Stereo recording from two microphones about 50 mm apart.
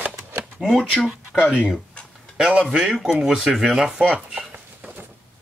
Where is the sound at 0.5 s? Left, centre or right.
Centre.